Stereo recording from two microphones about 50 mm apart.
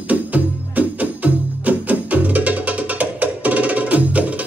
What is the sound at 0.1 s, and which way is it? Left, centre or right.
Music, right.